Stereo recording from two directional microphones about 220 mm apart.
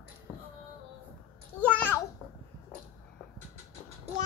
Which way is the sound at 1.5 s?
5° left (ahead or behind).